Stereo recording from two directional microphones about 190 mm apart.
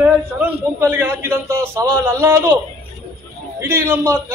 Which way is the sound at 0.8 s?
10° right (ahead or behind).